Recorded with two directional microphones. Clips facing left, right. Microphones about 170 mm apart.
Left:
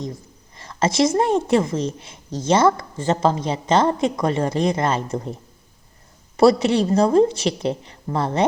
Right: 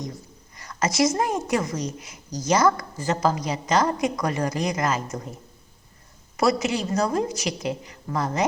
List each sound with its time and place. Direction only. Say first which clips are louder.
0.5 s a woman's voice: left 4 dB; 25° left (ahead or behind)
6.3 s a woman's voice: left 7 dB; 30° left (ahead or behind)